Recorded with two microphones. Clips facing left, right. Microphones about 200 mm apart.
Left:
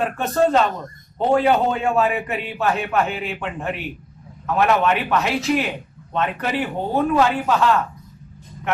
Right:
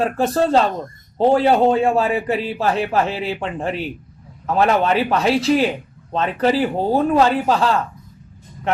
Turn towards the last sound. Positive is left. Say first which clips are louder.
# right 2 dB
turn(degrees=-30)  # may be behind; listen again after turning